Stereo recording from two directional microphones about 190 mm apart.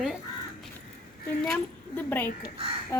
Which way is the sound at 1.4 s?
5° left (ahead or behind).